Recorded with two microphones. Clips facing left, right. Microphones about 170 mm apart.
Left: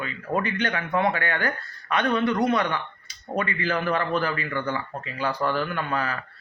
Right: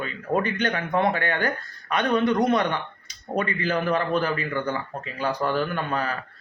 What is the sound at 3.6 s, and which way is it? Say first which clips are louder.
A man's voice: right 1 dB; 15° right (ahead or behind).